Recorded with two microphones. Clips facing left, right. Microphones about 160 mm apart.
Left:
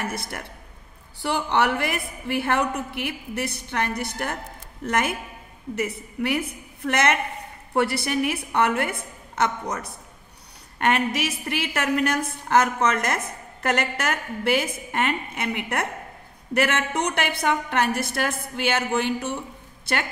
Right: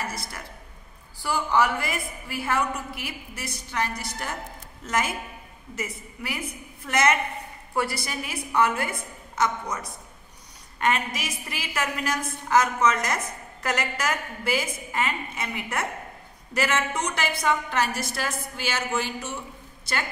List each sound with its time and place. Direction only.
0.0 s a woman's voice: 60° left (ahead or behind)